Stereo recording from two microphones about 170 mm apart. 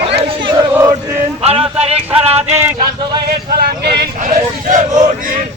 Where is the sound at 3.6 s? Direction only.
70° right (ahead or behind).